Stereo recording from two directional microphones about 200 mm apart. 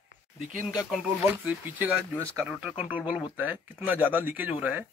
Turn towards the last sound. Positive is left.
turn(degrees=-5)  # may be behind; listen again after turning